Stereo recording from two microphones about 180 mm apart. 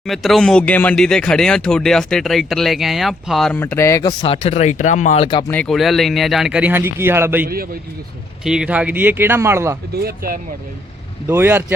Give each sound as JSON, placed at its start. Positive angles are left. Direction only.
{"t": 0.0, "sound": "speech", "side_deg": 0}
{"t": 3.6, "sound": "speech", "side_deg": 15}
{"t": 5.4, "sound": "speech", "side_deg": 10}
{"t": 7.4, "sound": "speech", "side_deg": -55}
{"t": 8.4, "sound": "speech", "side_deg": -5}
{"t": 9.9, "sound": "speech", "side_deg": -60}
{"t": 11.3, "sound": "speech", "side_deg": -15}